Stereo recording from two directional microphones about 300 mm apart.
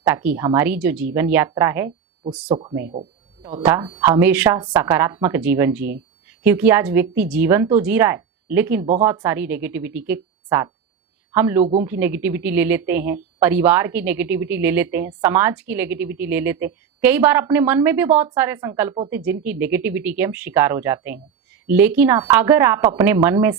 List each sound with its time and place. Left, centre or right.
0.0 s a woman's voice: centre
2.9 s a sound: centre
3.6 s a woman's voice: centre